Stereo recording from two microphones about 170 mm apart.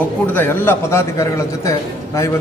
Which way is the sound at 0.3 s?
15° left (ahead or behind).